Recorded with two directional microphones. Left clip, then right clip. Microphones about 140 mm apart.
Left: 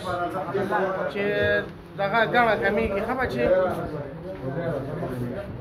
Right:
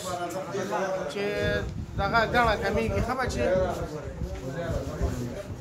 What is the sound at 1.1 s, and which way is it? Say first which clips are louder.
Speech: left 8 dB; 25° right (ahead or behind).